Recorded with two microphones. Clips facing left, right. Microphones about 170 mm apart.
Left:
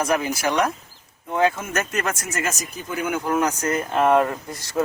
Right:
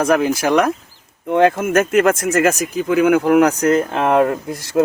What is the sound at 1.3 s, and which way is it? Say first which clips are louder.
Speech: right 8 dB; 70° right (ahead or behind).